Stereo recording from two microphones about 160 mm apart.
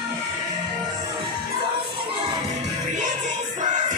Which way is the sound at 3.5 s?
50° right (ahead or behind).